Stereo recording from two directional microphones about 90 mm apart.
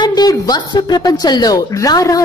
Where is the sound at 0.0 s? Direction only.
50° left (ahead or behind).